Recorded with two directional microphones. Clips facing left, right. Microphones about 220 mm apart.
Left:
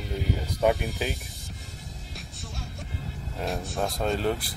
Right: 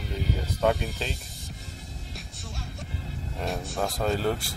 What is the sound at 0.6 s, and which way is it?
Speech, 15° left (ahead or behind).